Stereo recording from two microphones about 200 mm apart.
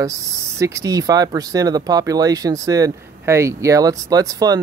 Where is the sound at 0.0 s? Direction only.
15° right (ahead or behind).